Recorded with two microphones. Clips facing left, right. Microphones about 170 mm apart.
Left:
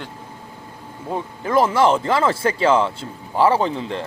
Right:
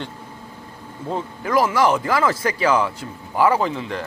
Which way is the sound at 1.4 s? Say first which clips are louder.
Left 2 dB; 25° left (ahead or behind).